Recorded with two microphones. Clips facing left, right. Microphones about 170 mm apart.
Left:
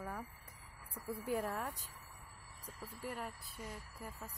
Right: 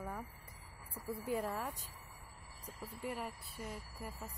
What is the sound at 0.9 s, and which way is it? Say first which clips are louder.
Speech: even; centre (ahead or behind).